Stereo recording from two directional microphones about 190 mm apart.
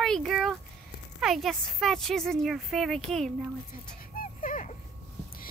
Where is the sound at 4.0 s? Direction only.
45° left (ahead or behind).